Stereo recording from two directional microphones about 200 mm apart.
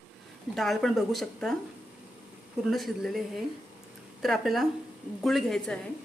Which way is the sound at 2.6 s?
Centre (ahead or behind).